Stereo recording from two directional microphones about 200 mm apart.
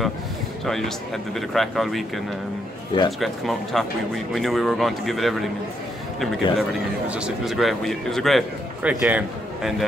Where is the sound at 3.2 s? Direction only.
Centre (ahead or behind).